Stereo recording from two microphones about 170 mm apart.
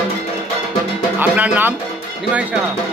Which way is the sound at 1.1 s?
10° right (ahead or behind).